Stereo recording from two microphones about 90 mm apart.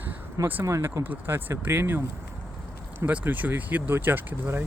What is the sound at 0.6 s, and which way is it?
Speech, 35° right (ahead or behind).